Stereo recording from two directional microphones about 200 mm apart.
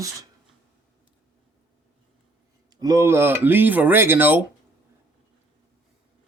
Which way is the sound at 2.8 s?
15° right (ahead or behind).